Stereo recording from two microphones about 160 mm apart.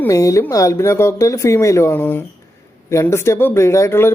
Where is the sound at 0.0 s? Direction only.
20° left (ahead or behind).